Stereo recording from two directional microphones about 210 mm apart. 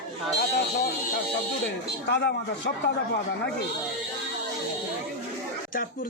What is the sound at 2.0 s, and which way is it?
Speech, 55° left (ahead or behind).